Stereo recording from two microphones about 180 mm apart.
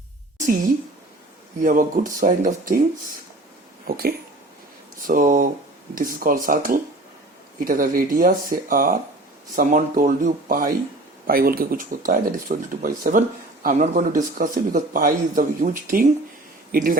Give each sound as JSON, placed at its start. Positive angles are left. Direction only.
{"t": 1.6, "sound": "speech", "side_deg": -45}
{"t": 3.8, "sound": "speech", "side_deg": -55}